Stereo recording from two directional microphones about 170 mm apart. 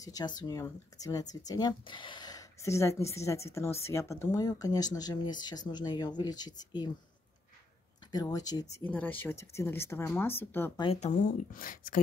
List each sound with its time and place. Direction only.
0.0 s speech: 25° left (ahead or behind)
8.1 s speech: 20° left (ahead or behind)
8.8 s speech: 10° left (ahead or behind)
10.8 s speech: 35° left (ahead or behind); by 12.0 s 55° left (ahead or behind)